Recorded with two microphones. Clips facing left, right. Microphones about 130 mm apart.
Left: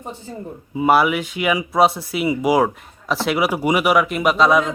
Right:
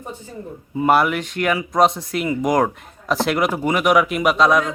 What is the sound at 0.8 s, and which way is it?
Speech, 5° left (ahead or behind).